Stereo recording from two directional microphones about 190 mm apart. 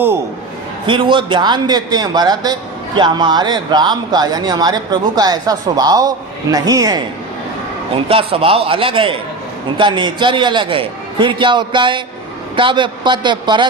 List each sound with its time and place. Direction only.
0.9 s a man's voice: 25° right (ahead or behind)
8.0 s a man's voice: 30° right (ahead or behind)